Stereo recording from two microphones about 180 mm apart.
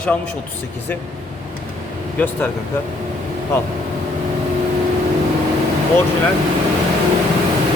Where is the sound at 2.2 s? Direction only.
10° left (ahead or behind).